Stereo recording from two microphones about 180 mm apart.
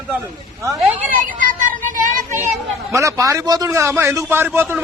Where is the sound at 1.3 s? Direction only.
45° right (ahead or behind).